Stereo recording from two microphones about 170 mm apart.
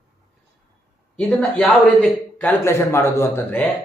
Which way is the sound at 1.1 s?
5° left (ahead or behind).